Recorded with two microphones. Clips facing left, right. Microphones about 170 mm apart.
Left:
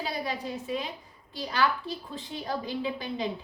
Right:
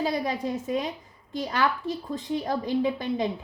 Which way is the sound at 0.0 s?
45° right (ahead or behind).